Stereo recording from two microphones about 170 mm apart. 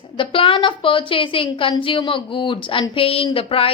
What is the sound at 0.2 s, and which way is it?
A woman's voice, 30° left (ahead or behind).